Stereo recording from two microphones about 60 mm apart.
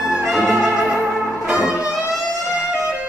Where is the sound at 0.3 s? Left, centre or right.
Centre.